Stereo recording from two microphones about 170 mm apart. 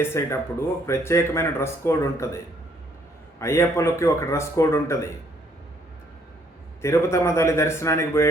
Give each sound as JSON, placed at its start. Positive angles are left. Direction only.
{"t": 0.0, "sound": "speech", "side_deg": 15}
{"t": 6.8, "sound": "speech", "side_deg": 15}